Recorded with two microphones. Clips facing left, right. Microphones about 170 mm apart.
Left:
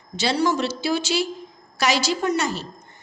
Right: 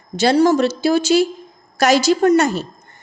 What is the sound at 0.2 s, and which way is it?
A woman's voice, 50° right (ahead or behind).